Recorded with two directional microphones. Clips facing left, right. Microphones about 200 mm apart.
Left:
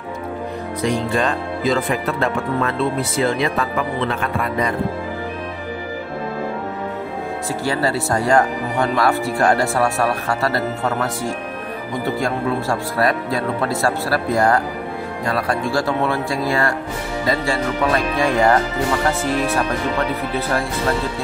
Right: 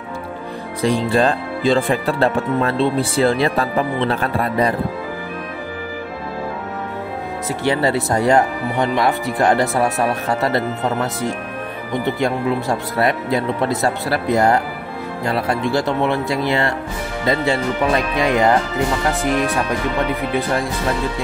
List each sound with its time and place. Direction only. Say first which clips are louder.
0.8 s speech: right 4 dB; 35° right (ahead or behind)
7.6 s speech: right 3 dB; 20° right (ahead or behind)
12.2 s speech: right 2 dB; 20° right (ahead or behind)